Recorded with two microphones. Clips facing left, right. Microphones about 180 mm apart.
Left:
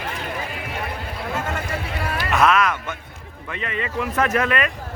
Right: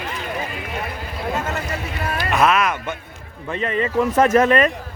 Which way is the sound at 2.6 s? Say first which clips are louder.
Right 1 dB; 15° right (ahead or behind).